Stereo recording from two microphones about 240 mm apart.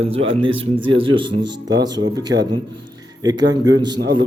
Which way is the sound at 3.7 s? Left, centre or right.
Centre.